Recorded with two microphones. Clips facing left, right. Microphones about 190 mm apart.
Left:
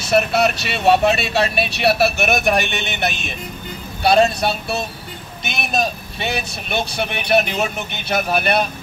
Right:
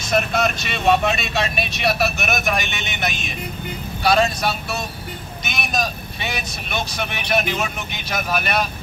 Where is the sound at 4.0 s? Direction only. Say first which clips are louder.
Left 3 dB; 30° left (ahead or behind).